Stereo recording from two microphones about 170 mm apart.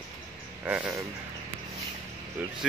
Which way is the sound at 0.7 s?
10° right (ahead or behind).